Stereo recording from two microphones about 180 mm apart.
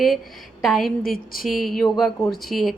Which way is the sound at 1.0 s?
55° left (ahead or behind).